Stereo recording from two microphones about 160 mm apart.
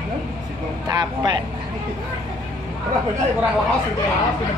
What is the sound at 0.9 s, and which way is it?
Speech, 25° right (ahead or behind).